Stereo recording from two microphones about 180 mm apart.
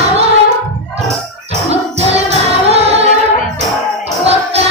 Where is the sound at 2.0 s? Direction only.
35° right (ahead or behind).